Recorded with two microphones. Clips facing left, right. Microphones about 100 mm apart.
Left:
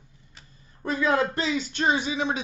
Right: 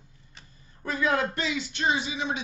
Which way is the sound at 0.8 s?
30° left (ahead or behind).